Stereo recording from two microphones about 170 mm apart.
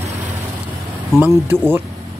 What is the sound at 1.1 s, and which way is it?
Speech, 15° right (ahead or behind).